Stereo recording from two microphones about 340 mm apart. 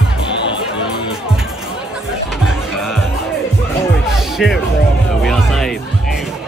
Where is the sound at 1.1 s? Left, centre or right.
Centre.